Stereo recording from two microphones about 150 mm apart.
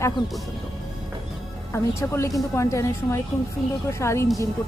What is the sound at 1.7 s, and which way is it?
Speech, 20° left (ahead or behind).